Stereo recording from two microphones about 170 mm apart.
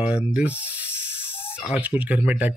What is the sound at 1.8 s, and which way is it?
Speech, 10° right (ahead or behind).